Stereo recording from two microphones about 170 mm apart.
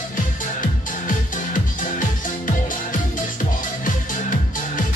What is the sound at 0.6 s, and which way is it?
Music, 50° left (ahead or behind).